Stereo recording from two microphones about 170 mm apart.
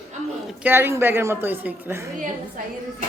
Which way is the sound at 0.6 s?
15° right (ahead or behind).